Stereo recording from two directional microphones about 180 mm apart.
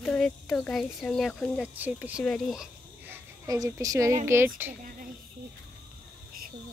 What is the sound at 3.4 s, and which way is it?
A woman's voice, 20° right (ahead or behind).